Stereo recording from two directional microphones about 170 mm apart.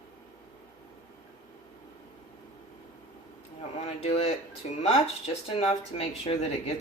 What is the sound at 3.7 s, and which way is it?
Speech, 40° left (ahead or behind).